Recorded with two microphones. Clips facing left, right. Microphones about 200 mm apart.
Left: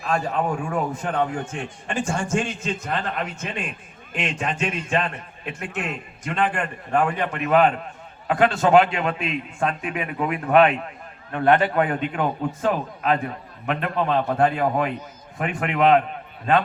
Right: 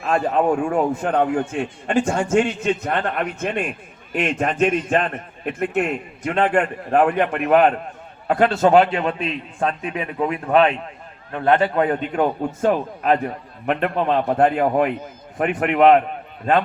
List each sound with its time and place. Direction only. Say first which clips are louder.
0.3 s a man's voice: right 6 dB; 45° right (ahead or behind)
8.3 s a man's voice: right 2 dB; 40° right (ahead or behind)
12.6 s a man's voice: right 4 dB; 45° right (ahead or behind)